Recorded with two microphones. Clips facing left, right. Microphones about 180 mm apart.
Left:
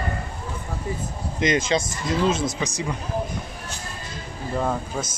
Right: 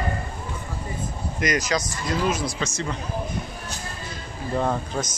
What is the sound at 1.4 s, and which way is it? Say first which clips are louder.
Speech: left 3 dB; 25° left (ahead or behind).